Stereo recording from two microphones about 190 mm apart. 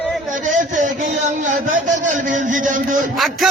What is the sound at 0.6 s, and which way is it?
Speech, 40° right (ahead or behind).